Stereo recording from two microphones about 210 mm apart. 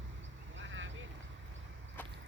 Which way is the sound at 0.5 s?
65° right (ahead or behind).